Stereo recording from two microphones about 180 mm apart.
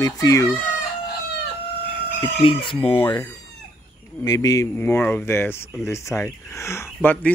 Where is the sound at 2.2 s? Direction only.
30° left (ahead or behind).